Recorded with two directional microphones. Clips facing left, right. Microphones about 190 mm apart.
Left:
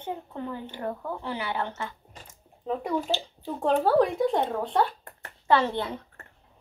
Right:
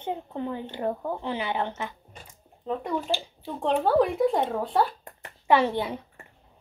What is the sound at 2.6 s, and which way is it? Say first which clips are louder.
Speech: even; 5° left (ahead or behind).